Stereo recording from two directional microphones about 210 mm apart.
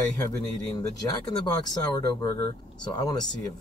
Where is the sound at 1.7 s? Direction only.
20° left (ahead or behind).